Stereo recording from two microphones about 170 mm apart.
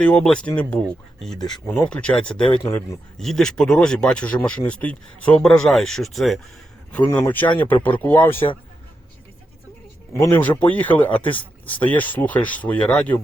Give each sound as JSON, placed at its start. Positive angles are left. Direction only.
{"t": 0.0, "sound": "speech", "side_deg": 5}
{"t": 7.0, "sound": "speech", "side_deg": 25}
{"t": 7.3, "sound": "speech", "side_deg": 10}
{"t": 10.2, "sound": "speech", "side_deg": 15}